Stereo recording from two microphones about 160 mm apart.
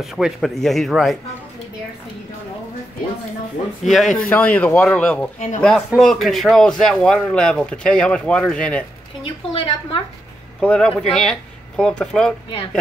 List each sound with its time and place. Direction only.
0.0 s a man's voice: centre (ahead or behind)
3.8 s a man's voice: centre (ahead or behind)
9.2 s a woman's voice: 35° left (ahead or behind)
10.6 s a man's voice: 5° left (ahead or behind)